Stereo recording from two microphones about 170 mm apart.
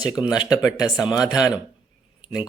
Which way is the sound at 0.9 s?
25° left (ahead or behind).